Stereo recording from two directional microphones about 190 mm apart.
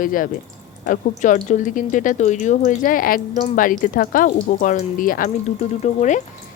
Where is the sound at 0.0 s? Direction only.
45° left (ahead or behind).